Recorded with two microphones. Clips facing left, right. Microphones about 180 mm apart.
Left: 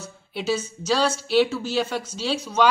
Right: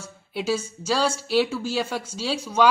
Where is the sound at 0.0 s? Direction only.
5° right (ahead or behind).